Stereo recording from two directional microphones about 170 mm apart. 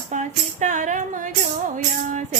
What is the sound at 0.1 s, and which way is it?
Tambourine, 45° right (ahead or behind).